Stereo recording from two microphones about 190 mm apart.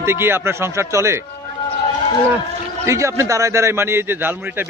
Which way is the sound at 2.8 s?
15° right (ahead or behind).